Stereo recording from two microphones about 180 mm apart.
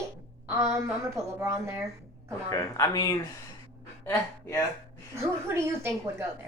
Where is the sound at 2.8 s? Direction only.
20° left (ahead or behind).